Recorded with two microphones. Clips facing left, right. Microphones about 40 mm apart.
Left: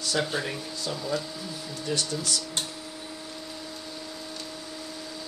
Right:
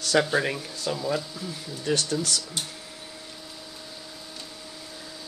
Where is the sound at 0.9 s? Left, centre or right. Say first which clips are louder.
Right 2 dB; centre.